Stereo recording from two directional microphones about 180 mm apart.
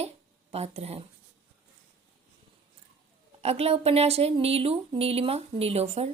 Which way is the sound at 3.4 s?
35° right (ahead or behind).